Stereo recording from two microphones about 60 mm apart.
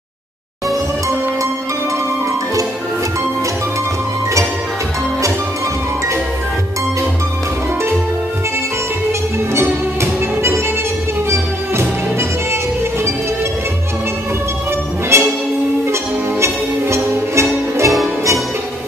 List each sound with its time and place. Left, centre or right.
11.2 s music: right
15.1 s music: right